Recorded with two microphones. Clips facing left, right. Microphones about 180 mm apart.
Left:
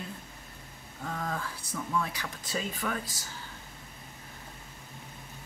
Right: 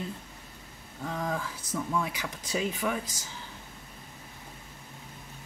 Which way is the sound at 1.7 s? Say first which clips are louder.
Right 2 dB; 15° right (ahead or behind).